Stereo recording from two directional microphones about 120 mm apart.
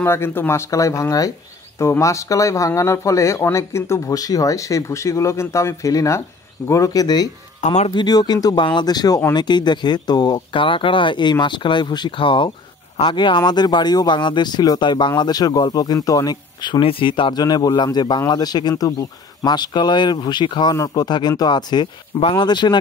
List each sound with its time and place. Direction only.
0.0 s speech: 20° left (ahead or behind)
7.6 s speech: 75° left (ahead or behind)
7.9 s speech: 35° left (ahead or behind)
16.8 s speech: 45° left (ahead or behind)